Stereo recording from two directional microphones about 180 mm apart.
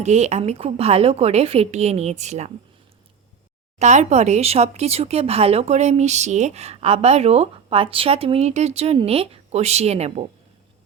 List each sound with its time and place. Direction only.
0.0 s speech: 40° right (ahead or behind)
3.8 s speech: 40° right (ahead or behind)